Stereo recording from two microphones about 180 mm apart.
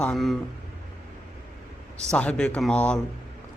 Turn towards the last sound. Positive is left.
turn(degrees=5)  # may be behind; listen again after turning